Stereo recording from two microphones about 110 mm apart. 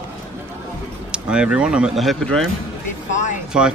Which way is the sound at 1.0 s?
10° right (ahead or behind).